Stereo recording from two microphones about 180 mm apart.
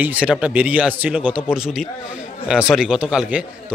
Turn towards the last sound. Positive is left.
turn(degrees=-5)  # may be behind; listen again after turning